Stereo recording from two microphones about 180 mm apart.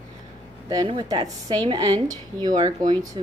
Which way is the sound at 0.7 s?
25° right (ahead or behind).